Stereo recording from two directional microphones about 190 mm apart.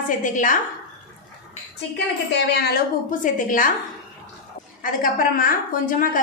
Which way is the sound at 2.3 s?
60° left (ahead or behind).